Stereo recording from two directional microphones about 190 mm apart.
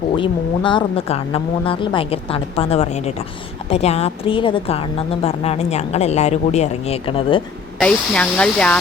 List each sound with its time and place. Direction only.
0.2 s a woman's voice: 25° left (ahead or behind)
7.8 s speech: 5° left (ahead or behind)